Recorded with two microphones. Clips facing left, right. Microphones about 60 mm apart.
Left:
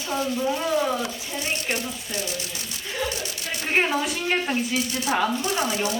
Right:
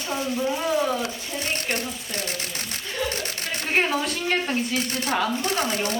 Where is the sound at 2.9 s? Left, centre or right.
Centre.